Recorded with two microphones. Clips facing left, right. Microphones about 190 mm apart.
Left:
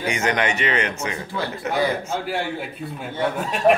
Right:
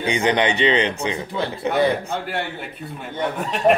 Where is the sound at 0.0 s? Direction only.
30° right (ahead or behind).